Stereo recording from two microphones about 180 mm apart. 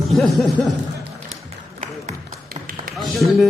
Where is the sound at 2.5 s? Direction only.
55° right (ahead or behind).